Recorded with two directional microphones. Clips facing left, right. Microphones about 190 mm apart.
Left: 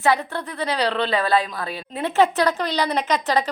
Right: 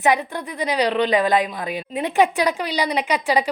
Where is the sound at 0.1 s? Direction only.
15° right (ahead or behind).